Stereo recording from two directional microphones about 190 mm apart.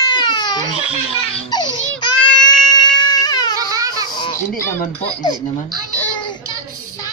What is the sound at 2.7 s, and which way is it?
Baby cry, 20° left (ahead or behind).